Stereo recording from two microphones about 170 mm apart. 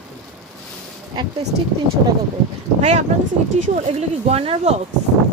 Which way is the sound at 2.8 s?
40° right (ahead or behind).